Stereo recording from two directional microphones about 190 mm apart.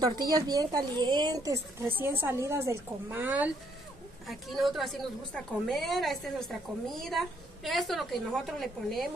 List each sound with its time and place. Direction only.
0.0 s a woman's voice: 20° right (ahead or behind); by 9.1 s centre (ahead or behind)